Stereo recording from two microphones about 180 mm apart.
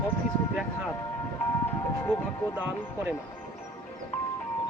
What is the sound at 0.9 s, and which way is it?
Music, 20° left (ahead or behind).